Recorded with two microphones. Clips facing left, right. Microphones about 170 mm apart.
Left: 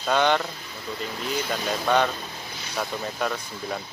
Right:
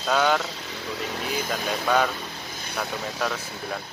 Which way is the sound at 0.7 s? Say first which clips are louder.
Right 1 dB; 80° right.